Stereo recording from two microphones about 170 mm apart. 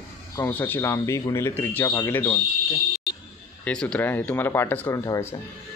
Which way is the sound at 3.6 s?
5° left (ahead or behind).